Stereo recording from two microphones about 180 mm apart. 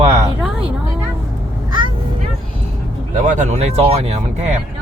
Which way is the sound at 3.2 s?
40° right (ahead or behind).